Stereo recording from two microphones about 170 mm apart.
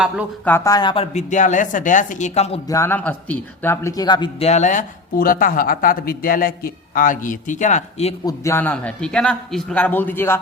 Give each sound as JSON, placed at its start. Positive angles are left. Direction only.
{"t": 0.4, "sound": "speech", "side_deg": 15}
{"t": 1.1, "sound": "speech", "side_deg": 45}
{"t": 2.6, "sound": "a man's voice", "side_deg": 15}
{"t": 4.4, "sound": "speech", "side_deg": 45}
{"t": 8.2, "sound": "a man's voice", "side_deg": 20}